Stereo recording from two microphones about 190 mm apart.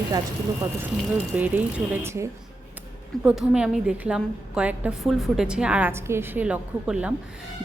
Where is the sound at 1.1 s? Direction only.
10° right (ahead or behind).